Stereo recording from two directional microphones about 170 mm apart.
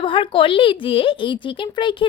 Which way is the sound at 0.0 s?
30° left (ahead or behind).